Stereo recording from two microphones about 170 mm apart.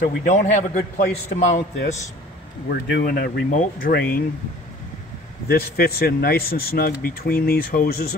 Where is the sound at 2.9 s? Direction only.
65° left (ahead or behind).